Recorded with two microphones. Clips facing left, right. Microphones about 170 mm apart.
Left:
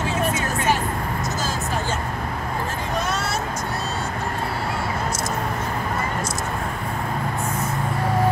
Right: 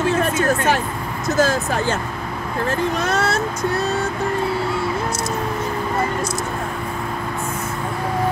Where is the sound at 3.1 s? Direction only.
60° right (ahead or behind).